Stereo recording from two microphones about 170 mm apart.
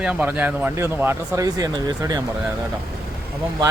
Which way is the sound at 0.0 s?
5° right (ahead or behind).